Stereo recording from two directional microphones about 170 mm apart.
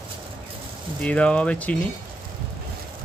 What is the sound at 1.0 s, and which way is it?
Speech, 5° left (ahead or behind).